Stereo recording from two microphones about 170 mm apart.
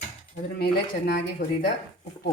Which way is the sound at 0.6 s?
70° left (ahead or behind).